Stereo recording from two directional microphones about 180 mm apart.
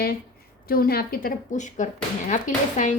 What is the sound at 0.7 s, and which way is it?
A woman's voice, 55° left (ahead or behind).